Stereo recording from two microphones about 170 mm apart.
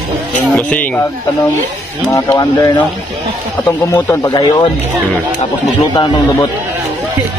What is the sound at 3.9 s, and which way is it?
Speech, 20° left (ahead or behind).